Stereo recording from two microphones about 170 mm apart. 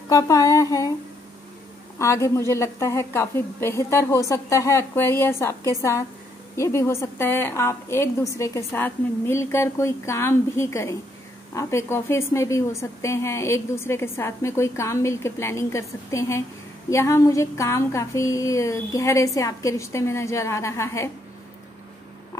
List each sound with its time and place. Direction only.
0.1 s speech: 20° left (ahead or behind)
2.0 s a woman's voice: 15° left (ahead or behind)